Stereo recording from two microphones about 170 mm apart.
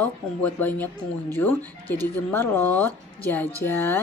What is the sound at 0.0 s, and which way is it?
Speech, 10° left (ahead or behind).